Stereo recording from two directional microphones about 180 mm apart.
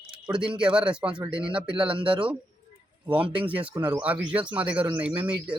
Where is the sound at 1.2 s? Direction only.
30° right (ahead or behind).